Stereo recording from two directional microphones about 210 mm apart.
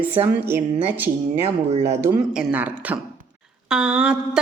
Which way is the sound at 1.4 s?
30° right (ahead or behind).